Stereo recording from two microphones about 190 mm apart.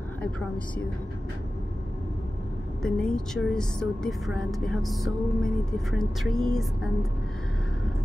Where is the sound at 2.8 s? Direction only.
5° left (ahead or behind).